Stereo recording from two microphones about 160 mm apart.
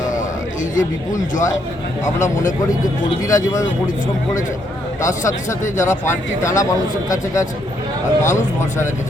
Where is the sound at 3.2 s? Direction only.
20° left (ahead or behind).